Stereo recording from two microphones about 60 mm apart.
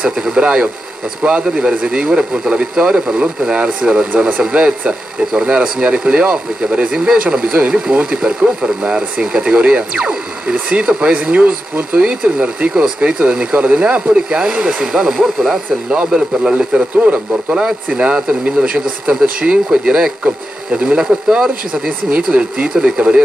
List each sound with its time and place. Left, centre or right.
0.0 s speech: centre
4.5 s speech: centre
16.9 s speech: right
20.2 s speech: right
21.0 s speech: centre
22.1 s speech: right